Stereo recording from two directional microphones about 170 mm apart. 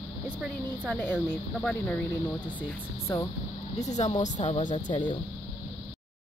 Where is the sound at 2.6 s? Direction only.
15° left (ahead or behind).